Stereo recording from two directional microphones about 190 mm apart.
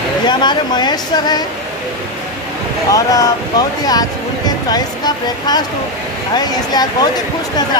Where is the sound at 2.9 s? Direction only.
20° left (ahead or behind).